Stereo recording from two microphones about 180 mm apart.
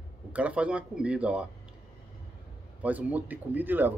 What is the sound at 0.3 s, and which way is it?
Speech, 5° right (ahead or behind).